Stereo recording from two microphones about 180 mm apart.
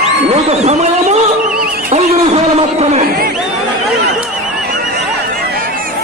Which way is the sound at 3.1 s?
55° right (ahead or behind).